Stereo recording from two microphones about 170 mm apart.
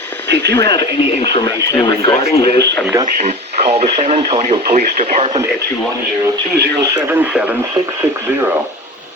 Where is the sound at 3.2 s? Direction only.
40° right (ahead or behind).